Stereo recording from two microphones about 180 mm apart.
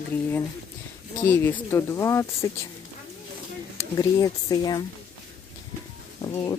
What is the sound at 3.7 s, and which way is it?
Speech, 20° left (ahead or behind).